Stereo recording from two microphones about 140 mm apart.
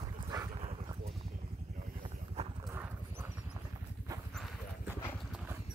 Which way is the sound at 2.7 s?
15° right (ahead or behind).